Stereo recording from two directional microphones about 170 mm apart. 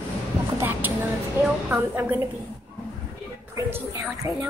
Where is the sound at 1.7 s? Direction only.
10° right (ahead or behind).